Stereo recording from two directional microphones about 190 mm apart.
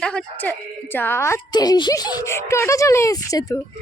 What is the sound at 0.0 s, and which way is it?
A man's voice, 5° left (ahead or behind).